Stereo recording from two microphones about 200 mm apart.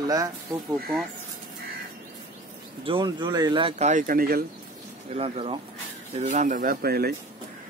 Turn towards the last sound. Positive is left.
turn(degrees=-50)  # may be behind; listen again after turning